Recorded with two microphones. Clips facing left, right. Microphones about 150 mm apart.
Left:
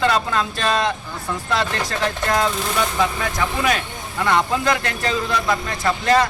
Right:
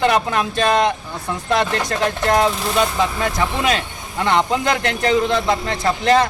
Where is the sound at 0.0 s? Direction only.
20° right (ahead or behind).